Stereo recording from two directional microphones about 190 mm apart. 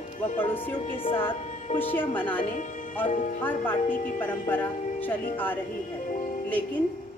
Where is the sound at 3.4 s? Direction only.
10° left (ahead or behind).